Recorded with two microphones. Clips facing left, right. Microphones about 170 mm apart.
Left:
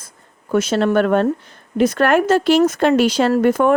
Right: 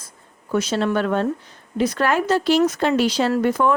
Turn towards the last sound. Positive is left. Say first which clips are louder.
# left 4 dB
turn(degrees=55)  # may be behind; listen again after turning